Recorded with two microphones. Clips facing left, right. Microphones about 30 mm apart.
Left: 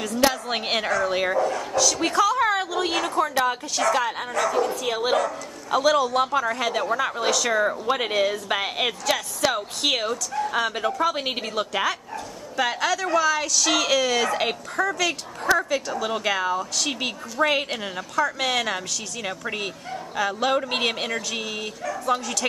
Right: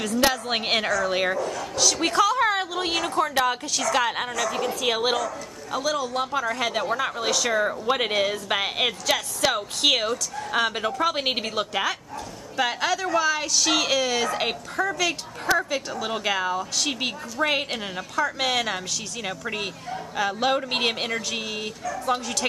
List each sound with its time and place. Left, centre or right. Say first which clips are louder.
0.3 s speech: right 1 dB; centre
3.9 s a woman's voice: right 1 dB; right
5.1 s speech: left 4 dB; left
5.8 s a man's voice: left 6 dB; centre
6.5 s a woman's voice: left 1 dB; centre
11.7 s a woman's voice: left 1 dB; centre